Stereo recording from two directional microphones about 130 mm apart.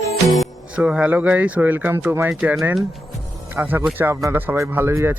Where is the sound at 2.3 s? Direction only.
5° right (ahead or behind).